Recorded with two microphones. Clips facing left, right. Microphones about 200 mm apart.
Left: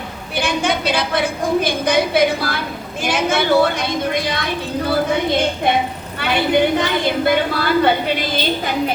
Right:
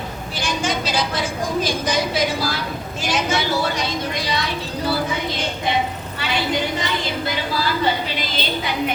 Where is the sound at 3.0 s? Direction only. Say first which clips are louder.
Left 5 dB; 55° left (ahead or behind).